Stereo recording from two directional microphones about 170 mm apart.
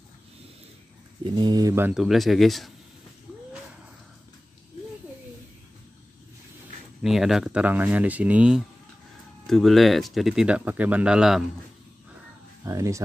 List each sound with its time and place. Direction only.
1.2 s speech: 25° right (ahead or behind)
2.0 s speech: centre (ahead or behind)
7.0 s speech: centre (ahead or behind)
12.6 s speech: 20° right (ahead or behind)